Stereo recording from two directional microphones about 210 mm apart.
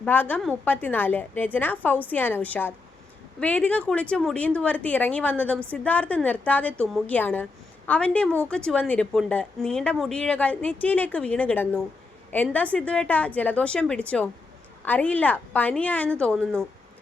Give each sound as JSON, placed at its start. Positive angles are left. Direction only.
{"t": 0.0, "sound": "a woman's voice", "side_deg": 10}